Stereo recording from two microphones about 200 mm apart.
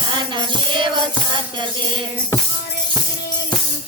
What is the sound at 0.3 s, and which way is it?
Music, 25° right (ahead or behind).